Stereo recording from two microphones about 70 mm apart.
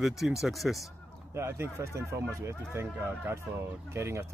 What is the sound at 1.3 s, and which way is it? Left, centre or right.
Speech, right.